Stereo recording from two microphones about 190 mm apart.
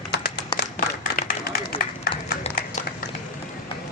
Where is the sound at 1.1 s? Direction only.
50° left (ahead or behind).